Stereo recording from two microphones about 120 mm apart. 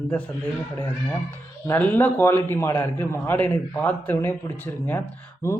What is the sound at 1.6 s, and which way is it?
A man's voice, 15° left (ahead or behind).